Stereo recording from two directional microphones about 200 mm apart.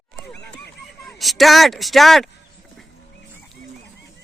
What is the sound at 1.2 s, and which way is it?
Speech, centre (ahead or behind).